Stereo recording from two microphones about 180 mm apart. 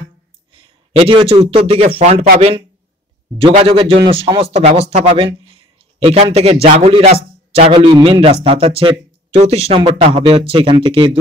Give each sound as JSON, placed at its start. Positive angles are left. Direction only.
{"t": 0.5, "sound": "speech", "side_deg": -30}
{"t": 3.3, "sound": "speech", "side_deg": -30}